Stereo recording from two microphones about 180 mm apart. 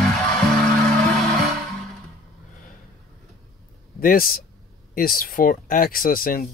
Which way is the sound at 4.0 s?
55° left (ahead or behind).